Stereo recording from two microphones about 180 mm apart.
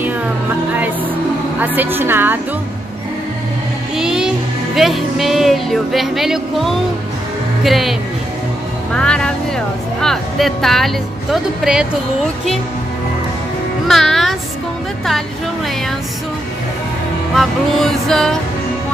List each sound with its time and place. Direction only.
0.7 s music: 10° right (ahead or behind)
1.6 s a woman's voice: 10° right (ahead or behind)
3.9 s child singing: 5° right (ahead or behind)
4.7 s speech: centre (ahead or behind)
8.9 s speech: 5° left (ahead or behind)
13.8 s speech: centre (ahead or behind)
17.4 s speech: centre (ahead or behind)